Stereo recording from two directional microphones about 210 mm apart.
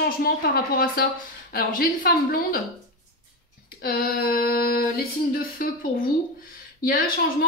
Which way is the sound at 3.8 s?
45° left (ahead or behind).